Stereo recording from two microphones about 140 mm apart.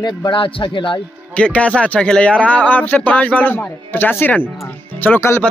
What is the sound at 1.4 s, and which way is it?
A man's voice, 10° left (ahead or behind).